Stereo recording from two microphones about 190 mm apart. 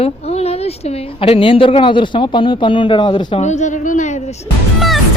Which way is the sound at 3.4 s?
40° left (ahead or behind).